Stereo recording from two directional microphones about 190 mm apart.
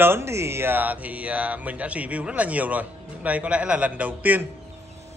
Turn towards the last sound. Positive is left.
turn(degrees=-10)  # may be behind; listen again after turning